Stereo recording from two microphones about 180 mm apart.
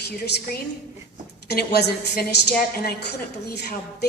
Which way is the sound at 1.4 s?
65° left (ahead or behind).